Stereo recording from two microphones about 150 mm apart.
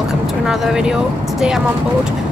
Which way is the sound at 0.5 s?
5° right (ahead or behind).